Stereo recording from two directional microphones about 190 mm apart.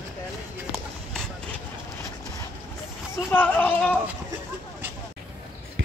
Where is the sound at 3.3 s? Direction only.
10° left (ahead or behind).